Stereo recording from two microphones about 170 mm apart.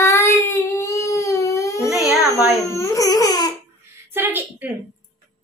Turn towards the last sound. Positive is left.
turn(degrees=-10)  # may be behind; listen again after turning